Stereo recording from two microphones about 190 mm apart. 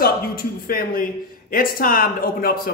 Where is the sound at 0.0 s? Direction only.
50° left (ahead or behind).